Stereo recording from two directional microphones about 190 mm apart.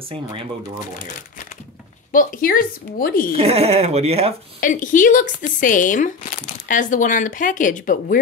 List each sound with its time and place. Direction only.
0.1 s speech: 30° right (ahead or behind)
2.1 s speech: 45° left (ahead or behind)
3.3 s speech: 35° right (ahead or behind)
4.6 s speech: 45° left (ahead or behind)